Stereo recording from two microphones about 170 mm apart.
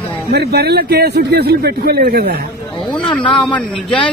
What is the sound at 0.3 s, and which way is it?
A man's voice, 70° right (ahead or behind).